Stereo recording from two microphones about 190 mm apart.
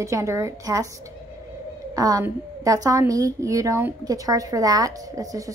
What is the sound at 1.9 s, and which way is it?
A woman's voice, 20° right (ahead or behind).